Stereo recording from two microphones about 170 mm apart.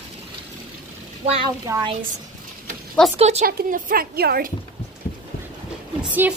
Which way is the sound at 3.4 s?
60° right (ahead or behind).